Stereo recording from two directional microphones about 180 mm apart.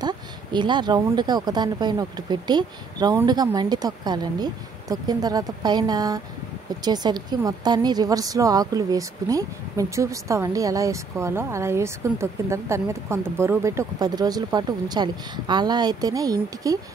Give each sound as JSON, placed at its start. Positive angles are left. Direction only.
{"t": 0.0, "sound": "a woman's voice", "side_deg": -25}